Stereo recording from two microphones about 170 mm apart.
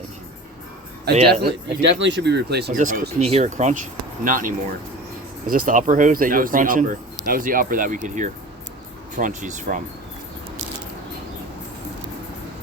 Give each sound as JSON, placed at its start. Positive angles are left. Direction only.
{"t": 1.3, "sound": "speech", "side_deg": -80}
{"t": 2.7, "sound": "speech", "side_deg": -50}